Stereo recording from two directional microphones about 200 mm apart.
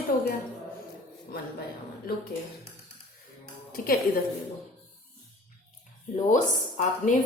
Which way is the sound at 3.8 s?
45° left (ahead or behind).